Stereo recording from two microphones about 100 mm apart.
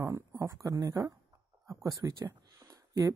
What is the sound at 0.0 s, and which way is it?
Speech, 30° right (ahead or behind).